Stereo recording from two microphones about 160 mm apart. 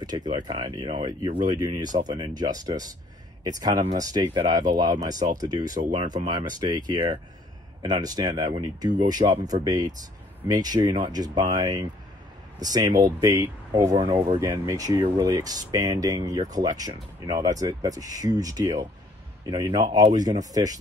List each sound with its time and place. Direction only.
0.0 s speech: 25° right (ahead or behind)